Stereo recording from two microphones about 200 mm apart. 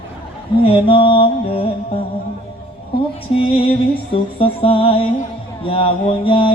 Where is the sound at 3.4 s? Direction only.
25° left (ahead or behind).